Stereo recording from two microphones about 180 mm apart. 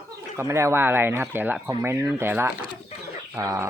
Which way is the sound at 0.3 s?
15° right (ahead or behind).